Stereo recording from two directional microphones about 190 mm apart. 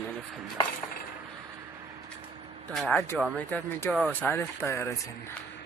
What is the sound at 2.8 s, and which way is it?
Speech, 10° left (ahead or behind).